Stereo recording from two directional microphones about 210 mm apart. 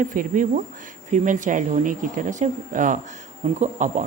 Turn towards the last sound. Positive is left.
turn(degrees=-35)  # may be behind; listen again after turning